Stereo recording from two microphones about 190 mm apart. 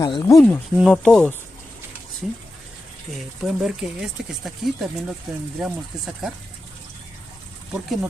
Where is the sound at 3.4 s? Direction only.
5° right (ahead or behind).